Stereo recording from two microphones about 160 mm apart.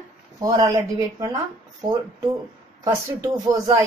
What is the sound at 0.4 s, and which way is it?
Speech, 20° right (ahead or behind).